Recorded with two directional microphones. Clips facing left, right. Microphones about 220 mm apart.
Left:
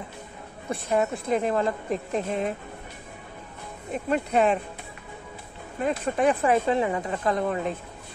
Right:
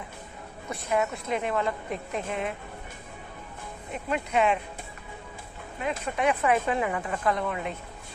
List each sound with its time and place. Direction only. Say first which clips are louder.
0.8 s a woman's voice: left 3 dB; 35° left (ahead or behind)
3.9 s a woman's voice: left 4 dB; 35° left (ahead or behind)
5.8 s a woman's voice: left 5 dB; 40° left (ahead or behind)